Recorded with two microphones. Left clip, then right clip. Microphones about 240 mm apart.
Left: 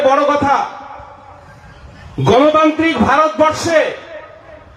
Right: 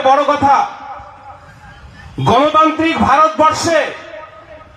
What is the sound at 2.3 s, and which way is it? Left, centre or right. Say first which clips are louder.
A man's voice: even; right.